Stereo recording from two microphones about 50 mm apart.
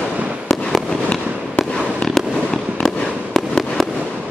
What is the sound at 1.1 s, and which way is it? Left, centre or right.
Fireworks, centre.